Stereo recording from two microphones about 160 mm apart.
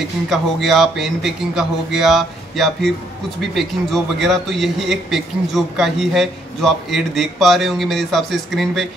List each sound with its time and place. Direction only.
0.3 s a man's voice: centre (ahead or behind)